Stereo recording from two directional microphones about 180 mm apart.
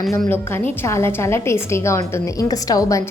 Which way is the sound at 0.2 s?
10° left (ahead or behind).